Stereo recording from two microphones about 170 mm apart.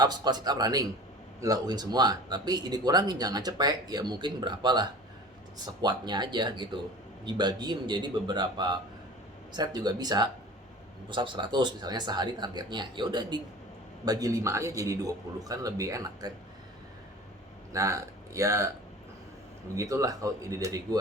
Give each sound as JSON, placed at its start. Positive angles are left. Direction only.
{"t": 0.0, "sound": "speech", "side_deg": -25}
{"t": 17.7, "sound": "speech", "side_deg": -20}
{"t": 19.7, "sound": "speech", "side_deg": -20}